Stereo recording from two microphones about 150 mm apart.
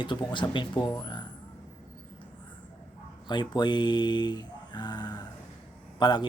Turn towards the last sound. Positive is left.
turn(degrees=30)  # may be behind; listen again after turning